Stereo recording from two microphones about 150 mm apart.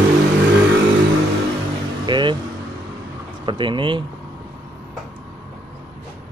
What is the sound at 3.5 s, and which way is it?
Speech, 35° right (ahead or behind).